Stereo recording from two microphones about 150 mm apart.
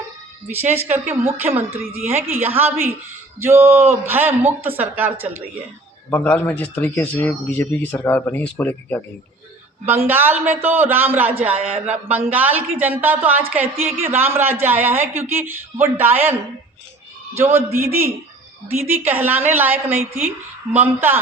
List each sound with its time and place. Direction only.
0.5 s a man's voice: 15° right (ahead or behind)
6.1 s a man's voice: 10° left (ahead or behind)
9.8 s a man's voice: 15° right (ahead or behind)